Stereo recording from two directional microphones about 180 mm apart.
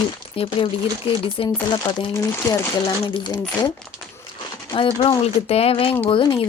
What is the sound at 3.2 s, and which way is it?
Speech, 25° left (ahead or behind).